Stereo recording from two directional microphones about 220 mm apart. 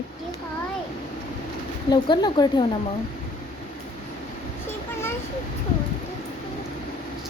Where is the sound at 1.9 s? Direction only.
20° left (ahead or behind).